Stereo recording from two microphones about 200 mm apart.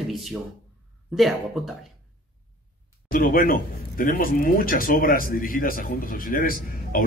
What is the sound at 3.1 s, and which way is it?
A man's voice, 45° left (ahead or behind).